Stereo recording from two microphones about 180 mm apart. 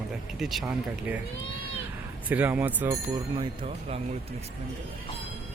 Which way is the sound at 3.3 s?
30° right (ahead or behind).